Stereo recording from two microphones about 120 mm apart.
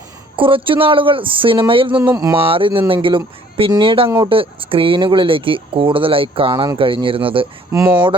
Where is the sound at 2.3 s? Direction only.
50° right (ahead or behind).